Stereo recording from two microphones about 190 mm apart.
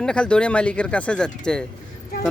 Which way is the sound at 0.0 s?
5° left (ahead or behind).